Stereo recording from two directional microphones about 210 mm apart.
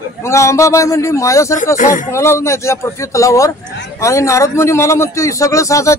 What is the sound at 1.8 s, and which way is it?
Speech, 40° left (ahead or behind).